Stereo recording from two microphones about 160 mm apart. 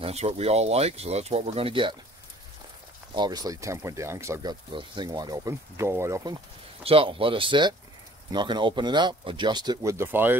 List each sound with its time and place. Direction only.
0.0 s speech: 40° right (ahead or behind)
3.2 s speech: 25° right (ahead or behind)
6.8 s speech: 35° right (ahead or behind); by 10.3 s 15° right (ahead or behind)